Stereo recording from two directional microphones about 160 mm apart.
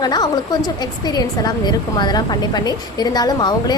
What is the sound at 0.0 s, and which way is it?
A woman's voice, 25° left (ahead or behind).